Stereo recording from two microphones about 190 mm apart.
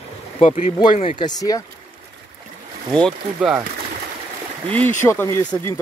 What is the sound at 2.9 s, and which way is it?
Speech, centre (ahead or behind).